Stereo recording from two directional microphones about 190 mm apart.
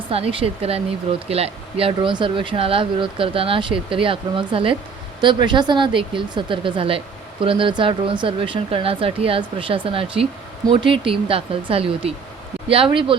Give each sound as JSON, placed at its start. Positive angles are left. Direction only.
{"t": 0.1, "sound": "speech", "side_deg": -30}